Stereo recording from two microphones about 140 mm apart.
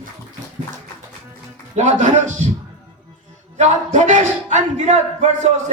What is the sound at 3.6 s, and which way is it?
Speech, 55° right (ahead or behind).